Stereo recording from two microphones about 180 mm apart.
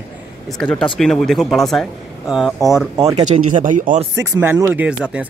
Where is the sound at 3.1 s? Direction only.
40° right (ahead or behind).